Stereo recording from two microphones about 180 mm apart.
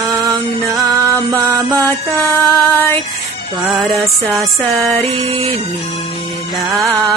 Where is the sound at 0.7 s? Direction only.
20° right (ahead or behind).